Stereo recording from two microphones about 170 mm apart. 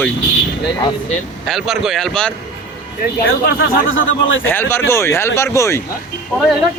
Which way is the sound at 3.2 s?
60° left (ahead or behind).